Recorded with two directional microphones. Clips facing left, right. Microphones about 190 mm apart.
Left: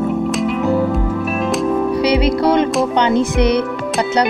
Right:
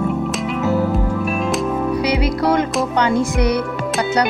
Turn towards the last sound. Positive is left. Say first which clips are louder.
# left 3 dB
turn(degrees=25)  # may be behind; listen again after turning